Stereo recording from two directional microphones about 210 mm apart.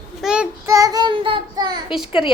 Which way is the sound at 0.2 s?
5° right (ahead or behind).